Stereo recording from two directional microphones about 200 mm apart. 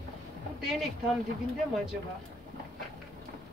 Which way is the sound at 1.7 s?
5° right (ahead or behind).